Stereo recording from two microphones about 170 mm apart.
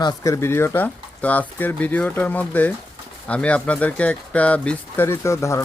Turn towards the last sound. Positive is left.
turn(degrees=15)  # may be behind; listen again after turning